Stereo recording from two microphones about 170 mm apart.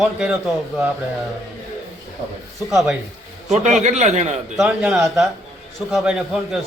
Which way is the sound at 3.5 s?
45° right (ahead or behind).